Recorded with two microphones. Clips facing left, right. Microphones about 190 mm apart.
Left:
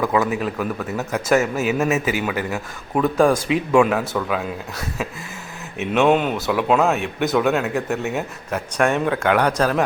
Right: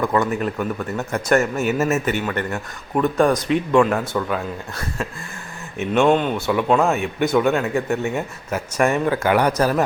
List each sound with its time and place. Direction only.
0.0 s speech: 5° left (ahead or behind)